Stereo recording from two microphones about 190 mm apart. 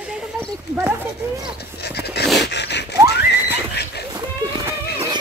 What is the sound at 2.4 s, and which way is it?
Gasp, 65° left (ahead or behind).